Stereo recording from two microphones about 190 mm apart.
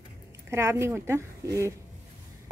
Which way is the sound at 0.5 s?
15° right (ahead or behind).